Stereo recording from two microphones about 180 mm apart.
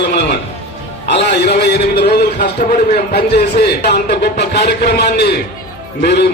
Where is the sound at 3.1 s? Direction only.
65° left (ahead or behind).